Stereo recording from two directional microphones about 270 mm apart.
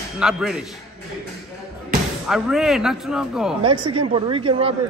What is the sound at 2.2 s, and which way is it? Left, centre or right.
A man's voice, centre.